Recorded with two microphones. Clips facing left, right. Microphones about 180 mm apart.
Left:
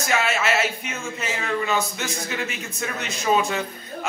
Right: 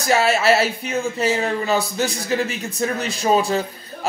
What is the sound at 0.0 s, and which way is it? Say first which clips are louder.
Speech: right 6 dB; 35° right (ahead or behind).